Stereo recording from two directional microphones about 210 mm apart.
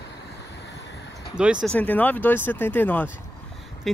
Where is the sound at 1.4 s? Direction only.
5° right (ahead or behind).